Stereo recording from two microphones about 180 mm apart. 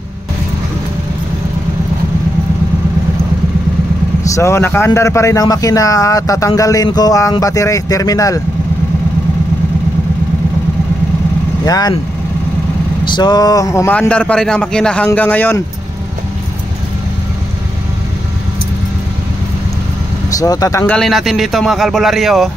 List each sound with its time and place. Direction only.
4.2 s a man's voice: 15° left (ahead or behind)
11.6 s a man's voice: 20° left (ahead or behind)
13.0 s speech: 25° left (ahead or behind)
20.3 s a man's voice: 20° left (ahead or behind)
20.9 s a man's voice: centre (ahead or behind)